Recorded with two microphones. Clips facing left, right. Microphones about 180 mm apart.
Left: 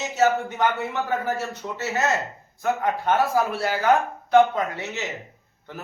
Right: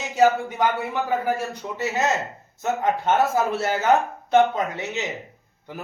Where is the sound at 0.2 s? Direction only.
10° right (ahead or behind).